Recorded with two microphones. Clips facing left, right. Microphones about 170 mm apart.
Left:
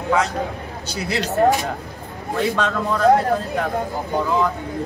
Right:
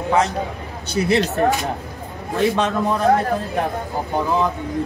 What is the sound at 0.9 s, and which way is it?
Speech, 20° right (ahead or behind).